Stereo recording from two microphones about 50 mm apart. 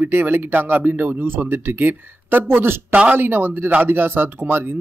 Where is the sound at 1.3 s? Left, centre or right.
Right.